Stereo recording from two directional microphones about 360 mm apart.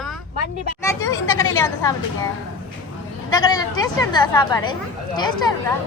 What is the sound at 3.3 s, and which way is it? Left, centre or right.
Speech, centre.